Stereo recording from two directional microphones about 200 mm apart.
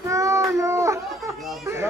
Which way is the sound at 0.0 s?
15° right (ahead or behind).